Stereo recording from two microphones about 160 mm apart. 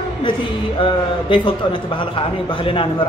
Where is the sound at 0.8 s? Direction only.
30° left (ahead or behind).